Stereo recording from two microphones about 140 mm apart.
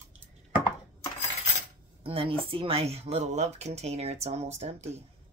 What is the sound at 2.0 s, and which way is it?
Speech, 40° right (ahead or behind).